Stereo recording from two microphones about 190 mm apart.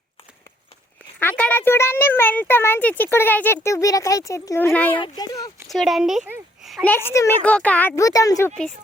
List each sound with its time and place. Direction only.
1.2 s a child's voice: 10° left (ahead or behind)
4.9 s speech: 25° left (ahead or behind)
5.6 s speech: centre (ahead or behind)
7.1 s a child's voice: 15° left (ahead or behind)